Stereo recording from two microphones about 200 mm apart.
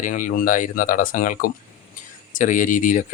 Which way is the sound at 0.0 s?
40° left (ahead or behind).